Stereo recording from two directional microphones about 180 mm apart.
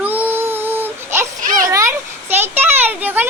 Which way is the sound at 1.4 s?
50° right (ahead or behind).